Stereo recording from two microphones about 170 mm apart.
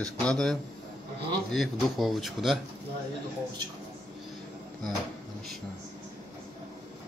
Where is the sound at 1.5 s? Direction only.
Centre (ahead or behind).